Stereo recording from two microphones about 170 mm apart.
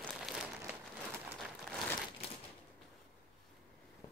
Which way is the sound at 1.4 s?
Centre (ahead or behind).